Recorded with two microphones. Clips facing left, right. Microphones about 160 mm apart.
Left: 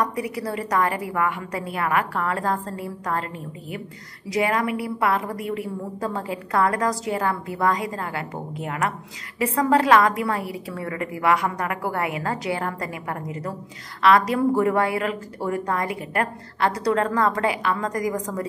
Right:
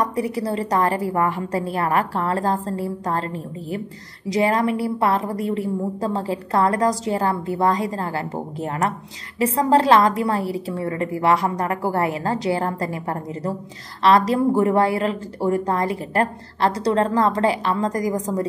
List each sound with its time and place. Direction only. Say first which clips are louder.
0.0 s a woman's voice: right 3 dB; 25° right (ahead or behind)
4.3 s a woman's voice: right 3 dB; 30° right (ahead or behind)